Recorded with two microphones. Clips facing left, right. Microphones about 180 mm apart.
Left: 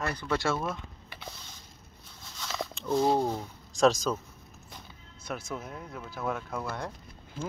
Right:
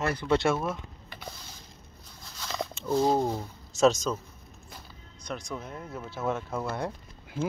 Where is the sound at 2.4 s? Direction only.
Centre (ahead or behind).